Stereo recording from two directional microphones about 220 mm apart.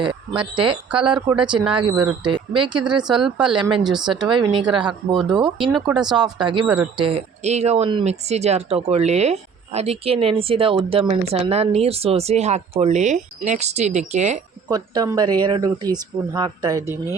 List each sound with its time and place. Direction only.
0.0 s speech: 20° right (ahead or behind)
3.2 s speech: 5° right (ahead or behind)
3.6 s speech: 20° right (ahead or behind)
5.5 s speech: centre (ahead or behind)
6.1 s speech: 20° right (ahead or behind)
14.7 s speech: 15° right (ahead or behind)